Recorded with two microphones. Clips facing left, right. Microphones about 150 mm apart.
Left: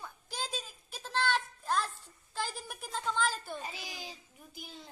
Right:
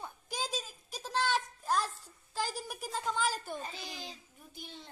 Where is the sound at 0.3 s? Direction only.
5° right (ahead or behind).